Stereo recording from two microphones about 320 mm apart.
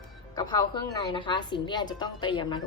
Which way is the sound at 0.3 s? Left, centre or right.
Centre.